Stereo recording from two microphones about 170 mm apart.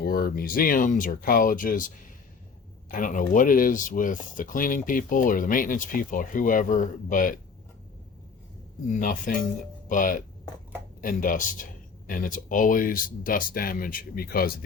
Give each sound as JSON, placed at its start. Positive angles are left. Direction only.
{"t": 0.0, "sound": "speech", "side_deg": 65}
{"t": 2.9, "sound": "speech", "side_deg": 50}
{"t": 9.0, "sound": "speech", "side_deg": 55}